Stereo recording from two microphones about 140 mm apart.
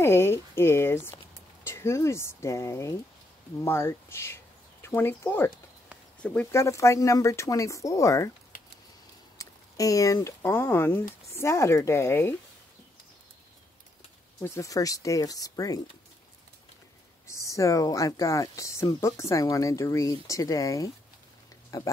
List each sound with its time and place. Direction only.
0.0 s a sound: 15° left (ahead or behind)
1.7 s speech: 20° left (ahead or behind)
6.5 s speech: 20° left (ahead or behind)
9.4 s speech: 25° left (ahead or behind)
14.4 s speech: 20° left (ahead or behind)
17.3 s speech: 20° left (ahead or behind)